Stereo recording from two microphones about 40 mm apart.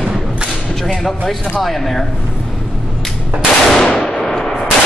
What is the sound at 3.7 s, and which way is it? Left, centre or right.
Gunshot, centre.